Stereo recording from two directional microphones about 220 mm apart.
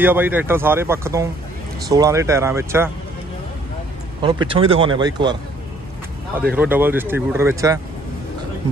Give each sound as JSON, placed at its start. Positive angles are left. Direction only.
{"t": 0.0, "sound": "speech", "side_deg": -10}
{"t": 4.2, "sound": "speech", "side_deg": -20}
{"t": 6.3, "sound": "speech", "side_deg": -5}